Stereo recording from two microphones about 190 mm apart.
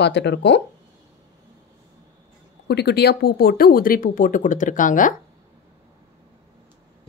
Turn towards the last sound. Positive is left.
turn(degrees=45)  # may be behind; listen again after turning